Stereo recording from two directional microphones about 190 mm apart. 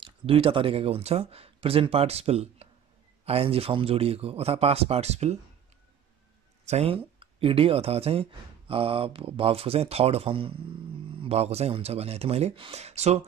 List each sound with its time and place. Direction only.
0.0 s speech: 30° right (ahead or behind)
6.6 s speech: 35° right (ahead or behind)